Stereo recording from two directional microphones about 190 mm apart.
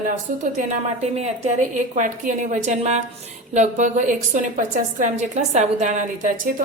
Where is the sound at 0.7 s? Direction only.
35° right (ahead or behind).